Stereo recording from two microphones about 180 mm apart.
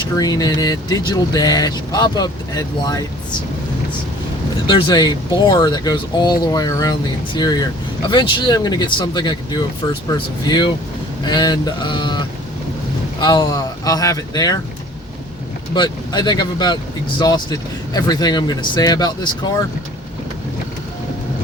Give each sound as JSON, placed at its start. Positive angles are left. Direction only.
{"t": 0.2, "sound": "speech", "side_deg": 20}
{"t": 4.6, "sound": "speech", "side_deg": 25}
{"t": 15.7, "sound": "speech", "side_deg": 25}